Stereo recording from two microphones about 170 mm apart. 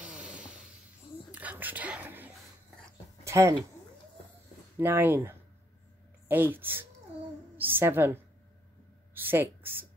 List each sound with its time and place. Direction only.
0.0 s a sound: 5° right (ahead or behind)
1.3 s whispering: 10° right (ahead or behind)
3.3 s speech: 15° right (ahead or behind)
4.7 s a woman's voice: 10° right (ahead or behind)
9.3 s a woman's voice: 10° right (ahead or behind)